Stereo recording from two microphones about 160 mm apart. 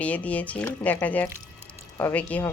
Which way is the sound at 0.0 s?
10° left (ahead or behind).